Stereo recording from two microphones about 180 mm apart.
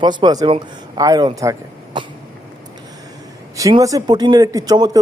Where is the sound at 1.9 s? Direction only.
25° right (ahead or behind).